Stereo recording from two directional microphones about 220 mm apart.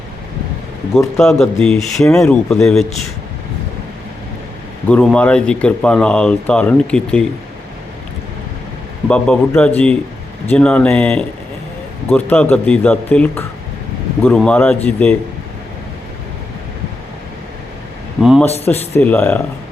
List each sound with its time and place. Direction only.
0.9 s speech: centre (ahead or behind)
4.9 s speech: 5° left (ahead or behind)
9.0 s speech: 5° left (ahead or behind)
18.2 s a sound: centre (ahead or behind)
18.6 s speech: 10° left (ahead or behind)